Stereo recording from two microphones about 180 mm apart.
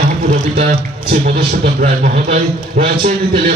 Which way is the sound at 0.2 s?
40° right (ahead or behind).